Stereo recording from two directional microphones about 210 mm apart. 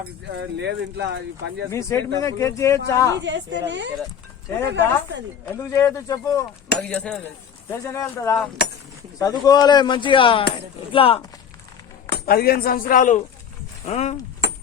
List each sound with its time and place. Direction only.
0.3 s speech: 55° right (ahead or behind)
1.7 s speech: 15° left (ahead or behind)
3.2 s speech: 55° right (ahead or behind)
5.5 s speech: 15° left (ahead or behind)
6.7 s speech: 5° left (ahead or behind); by 11.2 s 25° left (ahead or behind)
12.0 s speech: 50° left (ahead or behind); by 14.2 s 30° left (ahead or behind)